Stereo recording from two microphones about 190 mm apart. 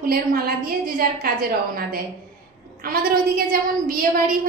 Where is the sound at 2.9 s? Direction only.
50° right (ahead or behind).